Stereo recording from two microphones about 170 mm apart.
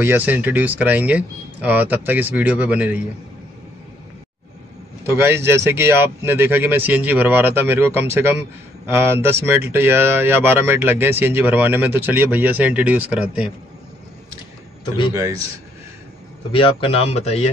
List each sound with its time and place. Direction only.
0.0 s speech: 10° right (ahead or behind)
5.0 s speech: 15° right (ahead or behind)
15.1 s speech: 15° right (ahead or behind)
16.5 s speech: 35° left (ahead or behind)